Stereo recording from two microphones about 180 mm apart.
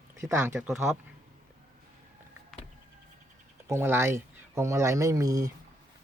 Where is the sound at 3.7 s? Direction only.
15° right (ahead or behind).